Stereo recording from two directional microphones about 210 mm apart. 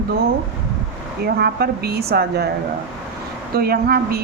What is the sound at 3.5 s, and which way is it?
Speech, 45° right (ahead or behind).